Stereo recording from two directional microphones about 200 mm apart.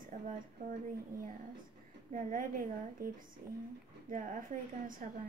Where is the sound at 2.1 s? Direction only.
40° right (ahead or behind).